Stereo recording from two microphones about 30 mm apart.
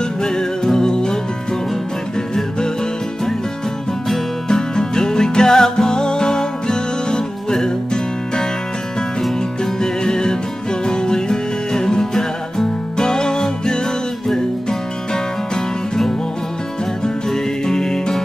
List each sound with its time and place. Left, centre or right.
0.2 s music: left
4.5 s music: left
9.8 s music: left
17.3 s music: centre